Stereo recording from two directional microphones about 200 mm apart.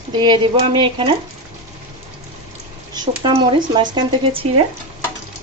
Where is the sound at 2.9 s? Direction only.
25° right (ahead or behind).